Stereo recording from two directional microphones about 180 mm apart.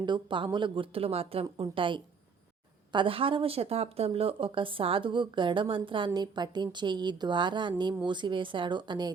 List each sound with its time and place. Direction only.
0.0 s a woman's voice: 25° right (ahead or behind)